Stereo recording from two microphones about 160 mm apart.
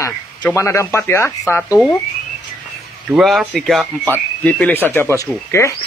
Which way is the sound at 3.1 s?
Centre (ahead or behind).